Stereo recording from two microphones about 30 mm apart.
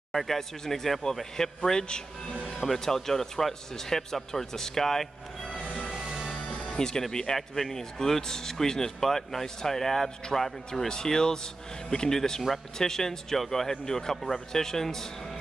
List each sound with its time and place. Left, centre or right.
0.1 s speech: centre
1.3 s speech: centre
2.8 s speech: centre
6.6 s speech: left
7.3 s speech: centre
12.2 s speech: centre